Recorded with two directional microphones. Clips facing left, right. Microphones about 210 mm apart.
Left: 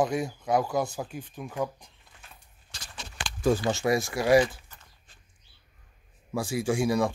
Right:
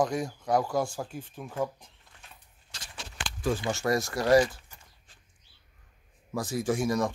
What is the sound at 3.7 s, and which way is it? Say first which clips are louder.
Speech: left 2 dB; 10° left (ahead or behind).